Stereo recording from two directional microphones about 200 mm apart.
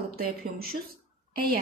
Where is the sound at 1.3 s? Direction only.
50° right (ahead or behind).